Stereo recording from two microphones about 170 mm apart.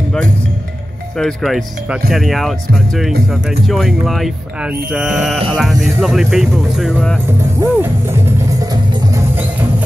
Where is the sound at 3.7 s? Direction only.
Centre (ahead or behind).